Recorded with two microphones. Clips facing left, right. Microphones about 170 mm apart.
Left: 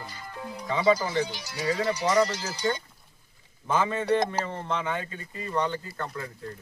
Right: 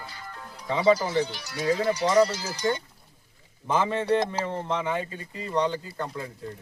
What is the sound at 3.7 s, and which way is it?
Speech, 10° right (ahead or behind).